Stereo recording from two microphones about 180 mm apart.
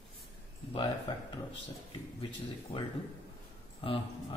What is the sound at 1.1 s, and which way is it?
Speech, 25° left (ahead or behind).